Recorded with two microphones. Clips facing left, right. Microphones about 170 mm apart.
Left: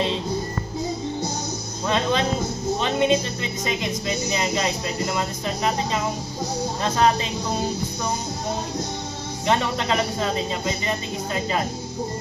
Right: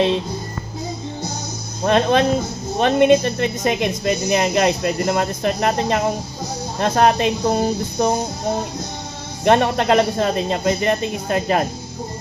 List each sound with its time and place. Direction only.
1.9 s music: 55° right (ahead or behind)
2.8 s a woman's voice: 60° right (ahead or behind)
9.4 s a woman's voice: 60° right (ahead or behind)